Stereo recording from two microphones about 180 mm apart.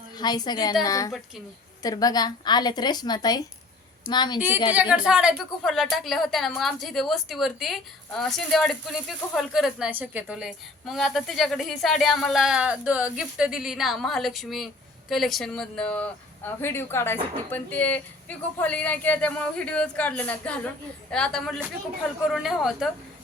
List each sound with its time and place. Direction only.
0.2 s a woman's voice: 25° left (ahead or behind)
4.4 s a woman's voice: 10° right (ahead or behind)